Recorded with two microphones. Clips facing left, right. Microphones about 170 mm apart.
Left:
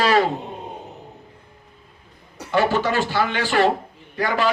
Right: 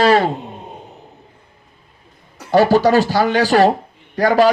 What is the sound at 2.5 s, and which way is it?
Speech, 35° right (ahead or behind).